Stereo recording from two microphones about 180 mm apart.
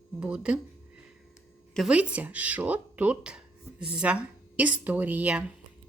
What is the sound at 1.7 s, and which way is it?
Speech, 5° right (ahead or behind).